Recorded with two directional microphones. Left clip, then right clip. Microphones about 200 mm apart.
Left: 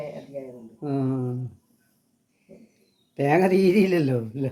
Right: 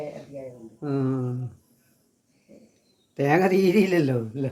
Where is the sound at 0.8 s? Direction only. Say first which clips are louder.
Even; centre (ahead or behind).